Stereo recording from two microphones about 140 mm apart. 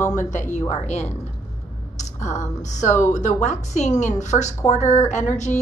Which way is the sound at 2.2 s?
60° left (ahead or behind).